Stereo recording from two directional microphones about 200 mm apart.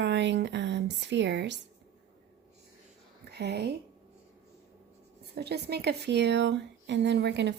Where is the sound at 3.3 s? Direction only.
55° right (ahead or behind).